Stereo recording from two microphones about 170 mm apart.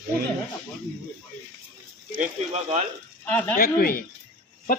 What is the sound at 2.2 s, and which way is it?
Speech, 40° right (ahead or behind).